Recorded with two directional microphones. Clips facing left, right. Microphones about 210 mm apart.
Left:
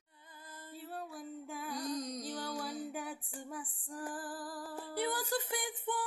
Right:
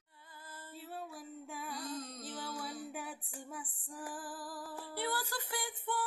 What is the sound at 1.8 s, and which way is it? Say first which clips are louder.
Music: left 5 dB; 15° left (ahead or behind).